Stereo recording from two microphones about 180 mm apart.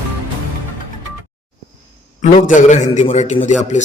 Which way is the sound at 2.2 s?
45° left (ahead or behind).